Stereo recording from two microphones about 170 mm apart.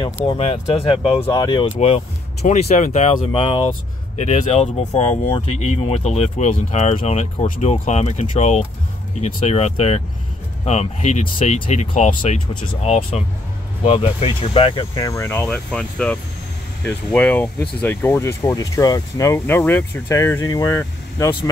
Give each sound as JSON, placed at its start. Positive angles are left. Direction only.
{"t": 0.0, "sound": "speech", "side_deg": 35}
{"t": 1.2, "sound": "speech", "side_deg": 20}
{"t": 1.8, "sound": "speech", "side_deg": 40}